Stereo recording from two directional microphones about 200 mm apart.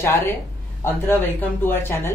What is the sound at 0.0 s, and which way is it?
Speech, 10° left (ahead or behind).